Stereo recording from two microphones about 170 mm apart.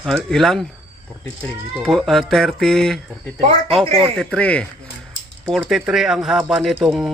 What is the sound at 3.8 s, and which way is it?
Speech, 35° right (ahead or behind).